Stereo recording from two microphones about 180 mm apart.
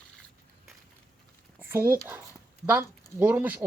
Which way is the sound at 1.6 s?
15° right (ahead or behind).